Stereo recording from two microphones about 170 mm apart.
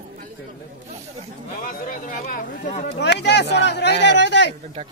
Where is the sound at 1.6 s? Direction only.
50° left (ahead or behind).